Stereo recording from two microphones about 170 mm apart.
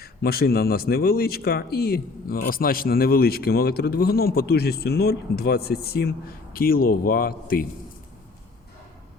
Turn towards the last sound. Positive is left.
turn(degrees=60)  # may be behind; listen again after turning